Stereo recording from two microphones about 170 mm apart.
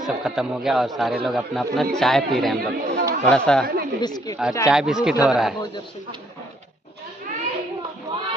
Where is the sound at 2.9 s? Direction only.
65° right (ahead or behind).